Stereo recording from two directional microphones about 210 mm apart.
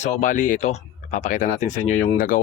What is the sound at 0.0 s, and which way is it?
A man's voice, 40° left (ahead or behind).